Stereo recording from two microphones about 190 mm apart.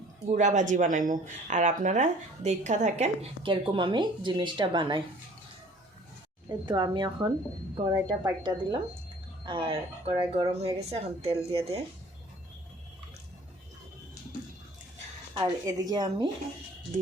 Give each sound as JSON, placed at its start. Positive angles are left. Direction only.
{"t": 0.3, "sound": "speech", "side_deg": -40}
{"t": 6.5, "sound": "speech", "side_deg": -25}
{"t": 15.4, "sound": "speech", "side_deg": -20}